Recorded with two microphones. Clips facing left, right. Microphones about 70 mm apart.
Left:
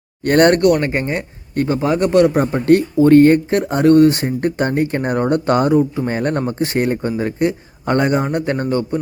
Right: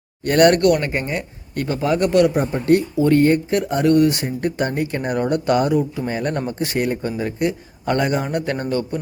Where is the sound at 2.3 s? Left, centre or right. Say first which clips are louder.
Left 4 dB; left.